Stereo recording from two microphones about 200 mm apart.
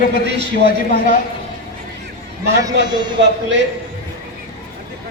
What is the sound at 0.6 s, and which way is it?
Speech, 45° left (ahead or behind).